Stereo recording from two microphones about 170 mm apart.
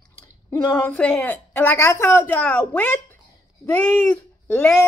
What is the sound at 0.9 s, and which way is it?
Speech, 10° left (ahead or behind).